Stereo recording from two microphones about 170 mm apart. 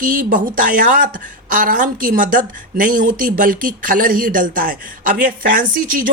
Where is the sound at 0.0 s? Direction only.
55° right (ahead or behind).